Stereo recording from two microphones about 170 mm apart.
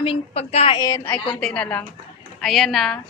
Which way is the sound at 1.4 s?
5° left (ahead or behind).